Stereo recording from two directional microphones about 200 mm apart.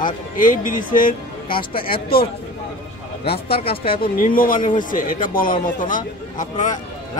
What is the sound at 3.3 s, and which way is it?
Speech, 30° left (ahead or behind).